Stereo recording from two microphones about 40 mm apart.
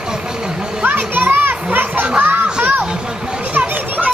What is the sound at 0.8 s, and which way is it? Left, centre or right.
Children playing, right.